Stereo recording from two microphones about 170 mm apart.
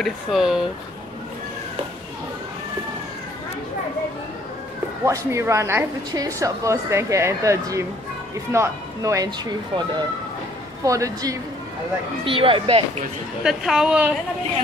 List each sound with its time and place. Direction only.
0.0 s a woman's voice: centre (ahead or behind)
5.0 s a woman's voice: 15° right (ahead or behind)
12.3 s speech: 30° right (ahead or behind)
13.4 s a woman's voice: 5° right (ahead or behind)